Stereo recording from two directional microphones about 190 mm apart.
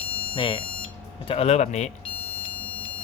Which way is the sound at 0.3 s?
25° left (ahead or behind).